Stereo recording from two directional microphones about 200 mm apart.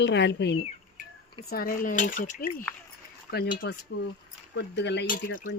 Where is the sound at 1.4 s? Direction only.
45° left (ahead or behind).